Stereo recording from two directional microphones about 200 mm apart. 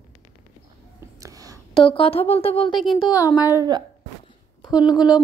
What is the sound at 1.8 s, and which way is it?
Speech, 25° left (ahead or behind).